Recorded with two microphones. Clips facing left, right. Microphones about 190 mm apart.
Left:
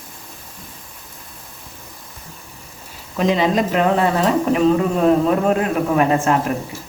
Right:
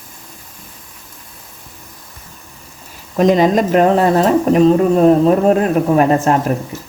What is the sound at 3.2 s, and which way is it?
Speech, 45° right (ahead or behind).